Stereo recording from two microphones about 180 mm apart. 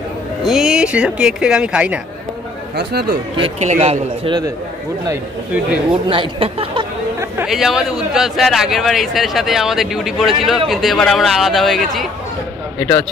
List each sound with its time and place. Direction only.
0.4 s a man's voice: centre (ahead or behind)
2.7 s speech: 65° right (ahead or behind)
3.3 s a man's voice: 35° right (ahead or behind)
6.0 s speech: 30° right (ahead or behind)
7.4 s a man's voice: centre (ahead or behind)